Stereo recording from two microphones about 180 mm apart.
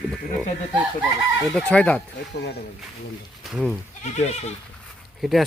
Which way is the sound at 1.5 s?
5° left (ahead or behind).